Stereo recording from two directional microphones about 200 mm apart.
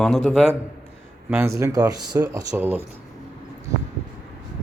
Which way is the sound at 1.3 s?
15° right (ahead or behind).